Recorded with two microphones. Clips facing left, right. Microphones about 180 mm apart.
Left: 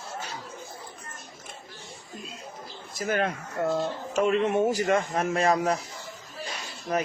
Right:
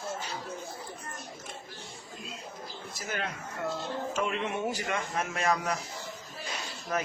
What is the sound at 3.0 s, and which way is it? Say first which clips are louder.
Speech: left 9 dB; 50° left (ahead or behind).